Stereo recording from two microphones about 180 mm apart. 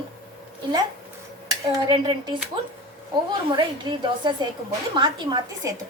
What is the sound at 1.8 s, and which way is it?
Speech, 25° right (ahead or behind).